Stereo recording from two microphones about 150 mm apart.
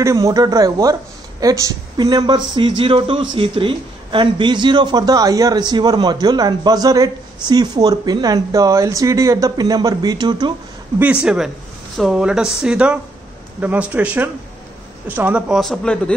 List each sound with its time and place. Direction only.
0.0 s a woman's voice: 20° right (ahead or behind)
11.0 s speech: 10° right (ahead or behind)